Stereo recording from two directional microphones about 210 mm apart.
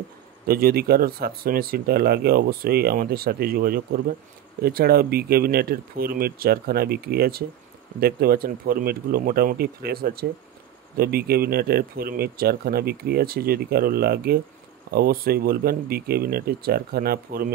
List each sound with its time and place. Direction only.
0.5 s speech: 45° right (ahead or behind)